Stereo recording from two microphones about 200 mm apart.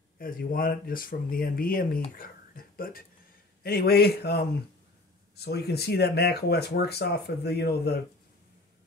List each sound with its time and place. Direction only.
0.2 s speech: 45° left (ahead or behind)
2.1 s a sound: 45° left (ahead or behind)
3.6 s speech: 50° left (ahead or behind)